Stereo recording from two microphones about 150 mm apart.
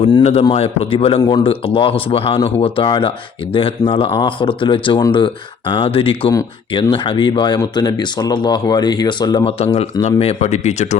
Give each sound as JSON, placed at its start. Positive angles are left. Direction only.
{"t": 0.0, "sound": "speech", "side_deg": 40}
{"t": 9.7, "sound": "speech", "side_deg": 40}